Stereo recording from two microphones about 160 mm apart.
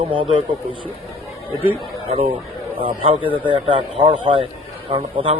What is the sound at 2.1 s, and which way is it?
A man's voice, 35° right (ahead or behind).